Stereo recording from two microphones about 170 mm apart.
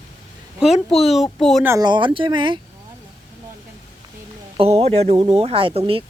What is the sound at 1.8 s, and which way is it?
Speech, 30° right (ahead or behind).